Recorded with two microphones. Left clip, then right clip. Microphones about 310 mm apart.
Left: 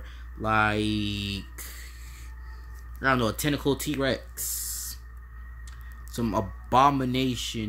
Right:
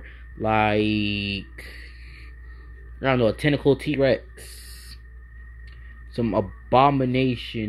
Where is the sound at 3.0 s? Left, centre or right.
Centre.